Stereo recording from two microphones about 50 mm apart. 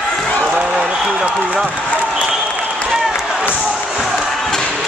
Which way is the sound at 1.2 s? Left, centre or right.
Right.